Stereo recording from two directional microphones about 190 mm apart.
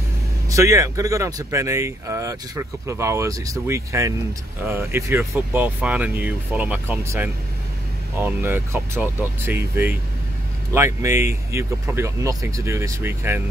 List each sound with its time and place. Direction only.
0.5 s speech: 15° right (ahead or behind)
10.7 s speech: 15° right (ahead or behind)